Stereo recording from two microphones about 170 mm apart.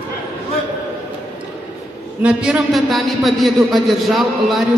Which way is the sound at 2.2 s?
5° right (ahead or behind).